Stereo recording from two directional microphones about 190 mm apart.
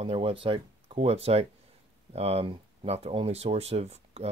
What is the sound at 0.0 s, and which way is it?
Speech, 30° right (ahead or behind).